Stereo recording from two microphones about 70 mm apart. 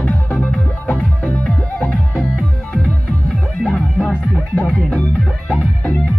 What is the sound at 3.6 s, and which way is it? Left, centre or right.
Music, centre.